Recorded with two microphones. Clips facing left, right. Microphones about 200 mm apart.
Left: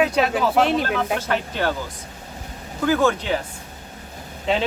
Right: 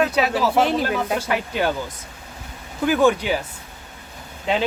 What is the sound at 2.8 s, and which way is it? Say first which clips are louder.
Speech: right 2 dB; 15° right (ahead or behind).